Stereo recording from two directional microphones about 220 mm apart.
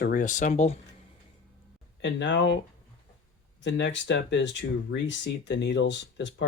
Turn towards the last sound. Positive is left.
turn(degrees=55)  # may be behind; listen again after turning